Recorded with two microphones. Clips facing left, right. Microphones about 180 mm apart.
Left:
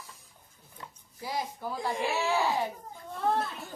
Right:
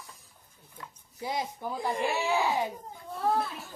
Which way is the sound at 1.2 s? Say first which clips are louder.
Right 1 dB; 20° right (ahead or behind).